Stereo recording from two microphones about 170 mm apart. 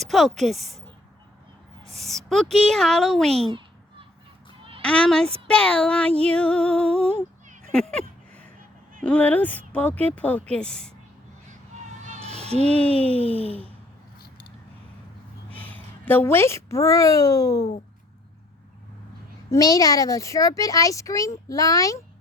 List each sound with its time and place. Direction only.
0.0 s a woman's voice: centre (ahead or behind)
1.9 s a woman's voice: centre (ahead or behind)
3.3 s speech: 35° right (ahead or behind)
4.8 s a woman's voice: 5° left (ahead or behind)
12.0 s a sound: 40° right (ahead or behind)
12.5 s speech: 40° right (ahead or behind)
15.4 s a woman's voice: 10° left (ahead or behind)
19.5 s speech: 20° left (ahead or behind)